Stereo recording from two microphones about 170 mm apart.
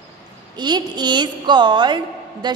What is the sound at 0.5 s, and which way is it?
A woman's voice, 25° right (ahead or behind).